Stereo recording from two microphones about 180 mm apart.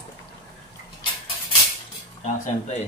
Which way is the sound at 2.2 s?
40° left (ahead or behind).